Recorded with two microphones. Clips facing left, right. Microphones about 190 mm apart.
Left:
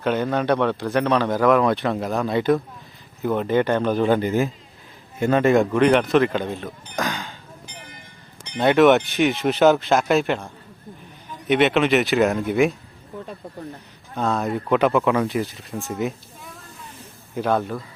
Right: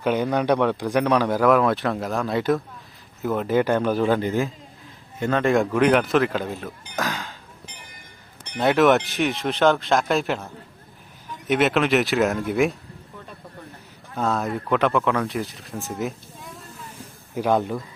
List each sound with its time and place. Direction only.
0.0 s speech: 10° right (ahead or behind)
8.5 s speech: centre (ahead or behind)
14.2 s speech: centre (ahead or behind)
17.3 s speech: 15° right (ahead or behind)